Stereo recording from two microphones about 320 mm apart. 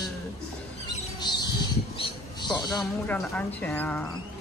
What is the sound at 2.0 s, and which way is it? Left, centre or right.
Speech, centre.